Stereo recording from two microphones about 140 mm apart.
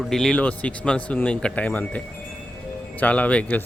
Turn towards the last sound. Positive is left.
turn(degrees=10)  # may be behind; listen again after turning